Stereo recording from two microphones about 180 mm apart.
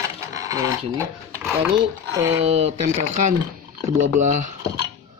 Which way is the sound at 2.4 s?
35° right (ahead or behind).